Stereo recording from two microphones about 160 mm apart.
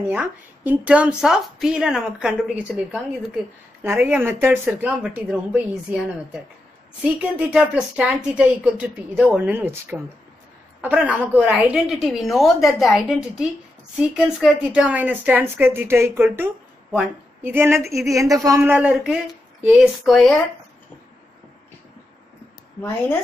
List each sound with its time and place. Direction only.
0.1 s a woman's voice: 10° right (ahead or behind)
3.8 s a woman's voice: 10° right (ahead or behind)
18.6 s a woman's voice: 10° right (ahead or behind)
22.8 s speech: 15° left (ahead or behind)